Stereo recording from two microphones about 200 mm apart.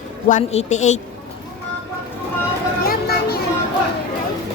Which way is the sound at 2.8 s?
50° left (ahead or behind).